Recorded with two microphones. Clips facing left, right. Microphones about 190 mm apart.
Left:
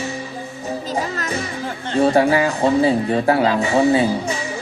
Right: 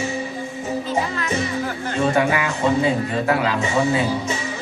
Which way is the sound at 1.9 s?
35° left (ahead or behind).